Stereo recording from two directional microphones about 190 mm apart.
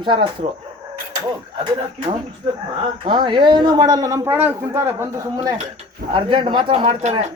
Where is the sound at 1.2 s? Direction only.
15° right (ahead or behind).